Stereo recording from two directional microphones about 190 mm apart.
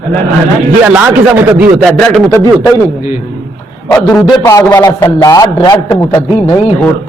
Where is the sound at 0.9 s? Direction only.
5° right (ahead or behind).